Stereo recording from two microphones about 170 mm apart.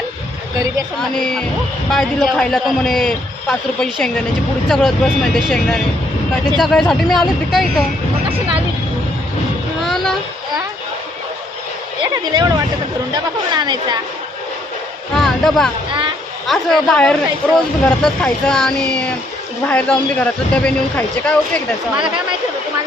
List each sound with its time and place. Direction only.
1.2 s a man's voice: 5° left (ahead or behind)
8.3 s speech: 30° right (ahead or behind)
9.8 s a sound: centre (ahead or behind)
12.1 s a woman's voice: 25° right (ahead or behind)
15.1 s speech: centre (ahead or behind)
15.9 s speech: 30° right (ahead or behind)
16.5 s a man's voice: 5° left (ahead or behind)